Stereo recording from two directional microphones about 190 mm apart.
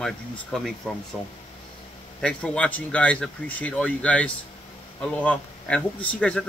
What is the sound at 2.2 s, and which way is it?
Speech, 5° left (ahead or behind).